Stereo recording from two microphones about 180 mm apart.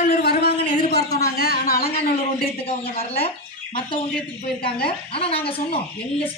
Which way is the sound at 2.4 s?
30° left (ahead or behind).